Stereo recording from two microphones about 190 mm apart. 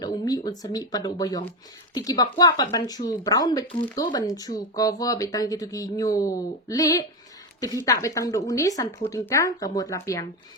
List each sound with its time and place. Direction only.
0.0 s speech: 20° left (ahead or behind)